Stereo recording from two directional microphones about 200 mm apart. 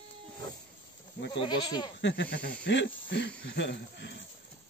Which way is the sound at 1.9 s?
60° left (ahead or behind).